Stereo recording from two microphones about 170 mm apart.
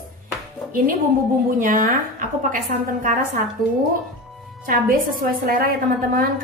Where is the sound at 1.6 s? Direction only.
50° right (ahead or behind).